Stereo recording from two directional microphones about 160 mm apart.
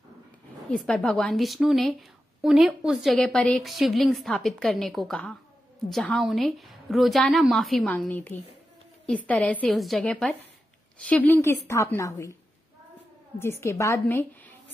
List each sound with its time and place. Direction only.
0.7 s a woman's voice: 5° left (ahead or behind); by 12.4 s 20° left (ahead or behind)
13.4 s a woman's voice: 15° left (ahead or behind)